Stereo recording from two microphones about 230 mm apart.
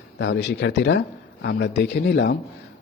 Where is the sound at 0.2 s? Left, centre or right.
Left.